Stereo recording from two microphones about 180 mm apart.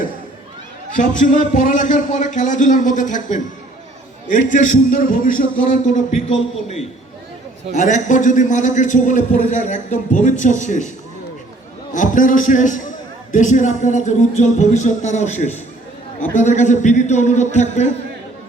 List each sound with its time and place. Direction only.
0.9 s a man's voice: 45° left (ahead or behind)
7.7 s a man's voice: 45° left (ahead or behind)
11.9 s a man's voice: 45° left (ahead or behind)